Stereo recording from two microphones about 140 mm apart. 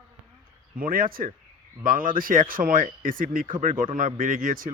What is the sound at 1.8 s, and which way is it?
Speech, 80° right.